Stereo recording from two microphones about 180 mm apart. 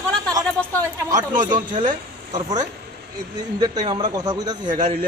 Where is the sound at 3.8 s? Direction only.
25° right (ahead or behind).